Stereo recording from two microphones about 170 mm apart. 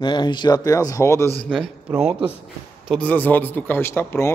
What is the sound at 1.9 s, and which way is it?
Speech, 5° right (ahead or behind).